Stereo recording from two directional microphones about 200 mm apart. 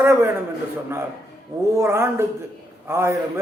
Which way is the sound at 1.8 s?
10° right (ahead or behind).